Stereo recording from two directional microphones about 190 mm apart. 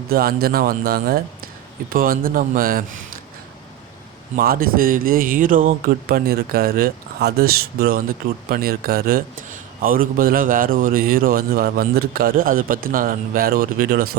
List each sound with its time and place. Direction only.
0.1 s a man's voice: 50° right (ahead or behind)
4.4 s a man's voice: 50° right (ahead or behind)